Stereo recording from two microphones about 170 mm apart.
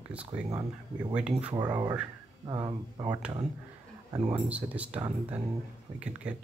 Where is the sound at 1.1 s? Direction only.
5° right (ahead or behind).